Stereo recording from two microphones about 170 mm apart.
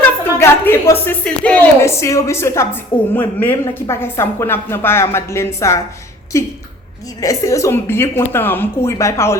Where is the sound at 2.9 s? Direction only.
30° left (ahead or behind).